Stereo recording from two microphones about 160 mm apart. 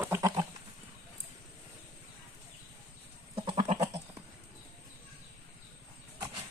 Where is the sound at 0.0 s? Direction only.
15° right (ahead or behind).